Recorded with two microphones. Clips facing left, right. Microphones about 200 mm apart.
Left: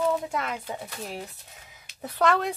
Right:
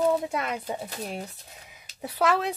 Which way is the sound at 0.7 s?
30° right (ahead or behind).